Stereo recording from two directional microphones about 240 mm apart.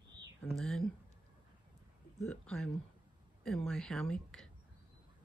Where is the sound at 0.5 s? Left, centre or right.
Centre.